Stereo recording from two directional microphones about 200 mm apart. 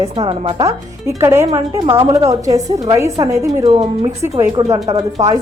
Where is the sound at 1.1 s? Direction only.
15° right (ahead or behind).